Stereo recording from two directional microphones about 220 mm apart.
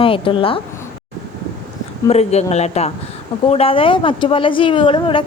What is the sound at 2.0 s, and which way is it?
A woman's voice, 30° left (ahead or behind).